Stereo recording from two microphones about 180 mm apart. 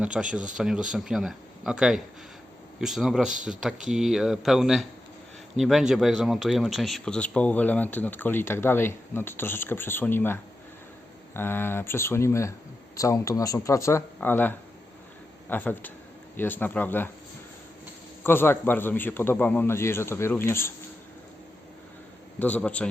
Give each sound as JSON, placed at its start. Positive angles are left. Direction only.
{"t": 0.0, "sound": "speech", "side_deg": -5}
{"t": 18.2, "sound": "speech", "side_deg": 10}
{"t": 22.4, "sound": "speech", "side_deg": 10}